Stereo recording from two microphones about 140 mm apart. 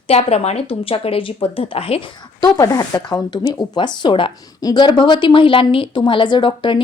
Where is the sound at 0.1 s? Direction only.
45° left (ahead or behind).